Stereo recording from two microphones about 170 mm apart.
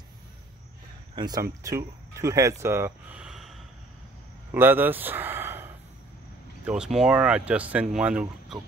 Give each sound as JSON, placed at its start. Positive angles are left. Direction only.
{"t": 1.1, "sound": "speech", "side_deg": -25}
{"t": 3.2, "sound": "a sound", "side_deg": 0}
{"t": 6.6, "sound": "speech", "side_deg": -5}